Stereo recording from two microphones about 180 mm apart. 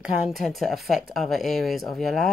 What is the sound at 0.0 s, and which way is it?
Speech, centre (ahead or behind).